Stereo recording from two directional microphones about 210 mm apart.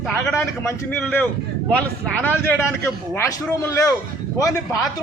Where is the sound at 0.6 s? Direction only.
10° left (ahead or behind).